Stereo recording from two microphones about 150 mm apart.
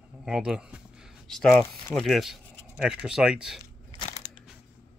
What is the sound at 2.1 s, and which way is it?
Speech, centre (ahead or behind).